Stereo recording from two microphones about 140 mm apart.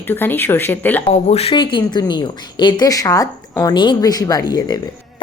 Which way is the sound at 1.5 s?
35° left (ahead or behind).